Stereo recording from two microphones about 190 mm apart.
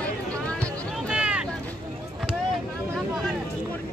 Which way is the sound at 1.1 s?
5° right (ahead or behind).